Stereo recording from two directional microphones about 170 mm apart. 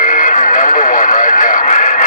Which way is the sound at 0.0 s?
50° left (ahead or behind).